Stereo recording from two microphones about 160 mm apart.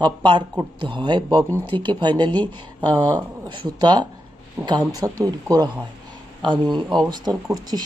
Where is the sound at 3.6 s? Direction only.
30° right (ahead or behind).